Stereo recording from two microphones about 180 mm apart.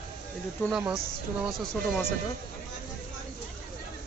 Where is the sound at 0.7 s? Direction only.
5° right (ahead or behind).